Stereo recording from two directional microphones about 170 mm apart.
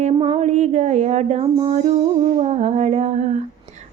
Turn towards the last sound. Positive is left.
turn(degrees=-40)  # may be behind; listen again after turning